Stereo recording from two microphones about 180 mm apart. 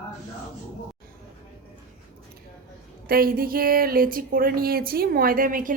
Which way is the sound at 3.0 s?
55° right (ahead or behind).